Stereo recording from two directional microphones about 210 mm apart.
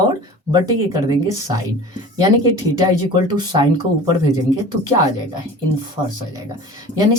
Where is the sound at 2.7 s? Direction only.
20° right (ahead or behind).